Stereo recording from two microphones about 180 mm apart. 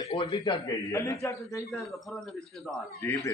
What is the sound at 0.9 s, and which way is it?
Speech, 15° left (ahead or behind).